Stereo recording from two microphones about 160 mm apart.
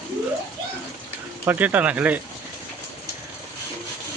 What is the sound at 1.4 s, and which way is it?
Speech, 10° right (ahead or behind).